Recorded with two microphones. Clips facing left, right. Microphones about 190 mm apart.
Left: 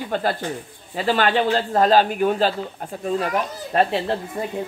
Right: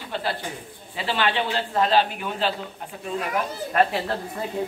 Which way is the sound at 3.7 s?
30° left (ahead or behind).